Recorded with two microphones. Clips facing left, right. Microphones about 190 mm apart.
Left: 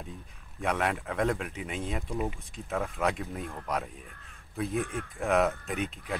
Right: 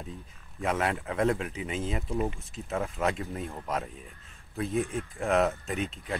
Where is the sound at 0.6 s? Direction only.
Centre (ahead or behind).